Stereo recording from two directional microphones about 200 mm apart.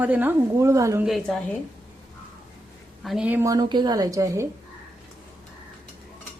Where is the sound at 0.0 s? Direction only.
10° right (ahead or behind).